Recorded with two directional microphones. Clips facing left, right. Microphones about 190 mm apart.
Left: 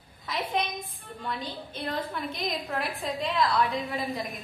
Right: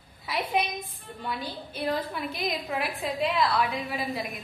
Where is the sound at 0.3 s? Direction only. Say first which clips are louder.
Right 2 dB; 10° right (ahead or behind).